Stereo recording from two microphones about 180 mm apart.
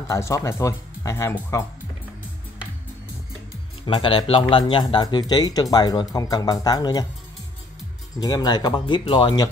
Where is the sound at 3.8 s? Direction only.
25° left (ahead or behind).